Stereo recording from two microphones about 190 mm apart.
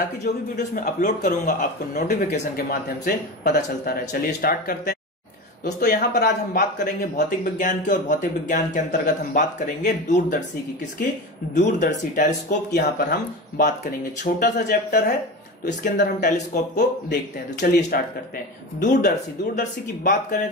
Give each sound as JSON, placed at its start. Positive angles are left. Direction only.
{"t": 0.2, "sound": "a man's voice", "side_deg": 40}
{"t": 11.5, "sound": "a man's voice", "side_deg": 40}
{"t": 12.7, "sound": "speech", "side_deg": 55}
{"t": 18.8, "sound": "a man's voice", "side_deg": 40}